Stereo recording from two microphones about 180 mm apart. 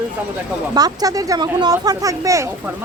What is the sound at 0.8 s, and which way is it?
Speech, 20° right (ahead or behind).